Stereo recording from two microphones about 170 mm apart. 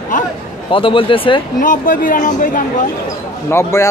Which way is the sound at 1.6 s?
50° left (ahead or behind).